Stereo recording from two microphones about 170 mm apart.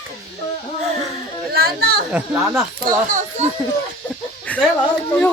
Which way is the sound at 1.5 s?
65° right (ahead or behind).